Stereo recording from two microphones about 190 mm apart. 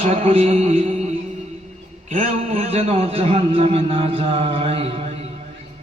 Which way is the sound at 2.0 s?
40° right (ahead or behind).